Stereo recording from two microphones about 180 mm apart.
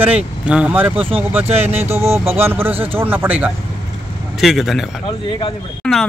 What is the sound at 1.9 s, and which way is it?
A man's voice, 15° right (ahead or behind).